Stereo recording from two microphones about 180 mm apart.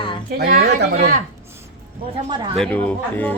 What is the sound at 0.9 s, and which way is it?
Speech, 45° right (ahead or behind).